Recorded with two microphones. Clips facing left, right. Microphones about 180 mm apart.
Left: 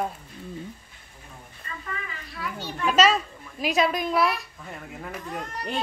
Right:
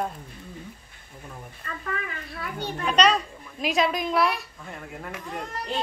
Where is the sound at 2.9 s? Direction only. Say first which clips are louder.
Left 1 dB; 5° left (ahead or behind).